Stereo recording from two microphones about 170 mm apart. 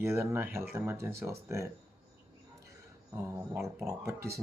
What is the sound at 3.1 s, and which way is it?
Speech, 15° right (ahead or behind).